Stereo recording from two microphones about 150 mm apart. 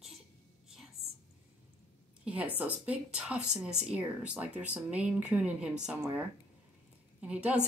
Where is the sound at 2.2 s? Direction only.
10° right (ahead or behind).